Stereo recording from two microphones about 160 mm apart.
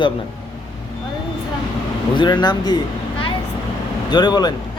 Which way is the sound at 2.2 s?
25° left (ahead or behind).